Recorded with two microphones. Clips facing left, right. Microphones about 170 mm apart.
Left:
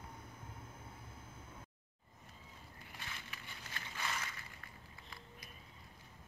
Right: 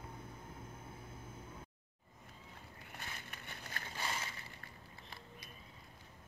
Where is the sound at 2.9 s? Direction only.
55° right (ahead or behind).